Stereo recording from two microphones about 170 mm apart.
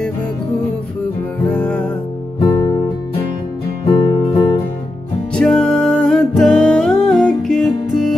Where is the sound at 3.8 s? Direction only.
30° left (ahead or behind).